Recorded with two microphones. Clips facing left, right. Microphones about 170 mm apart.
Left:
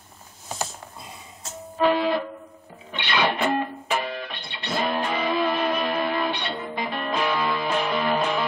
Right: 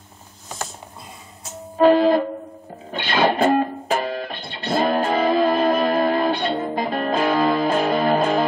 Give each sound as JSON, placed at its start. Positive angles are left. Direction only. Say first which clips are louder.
{"t": 1.8, "sound": "music", "louder": "right 7 dB", "side_deg": -40}